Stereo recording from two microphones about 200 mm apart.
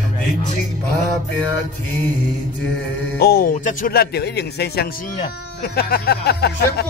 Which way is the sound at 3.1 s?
50° left (ahead or behind).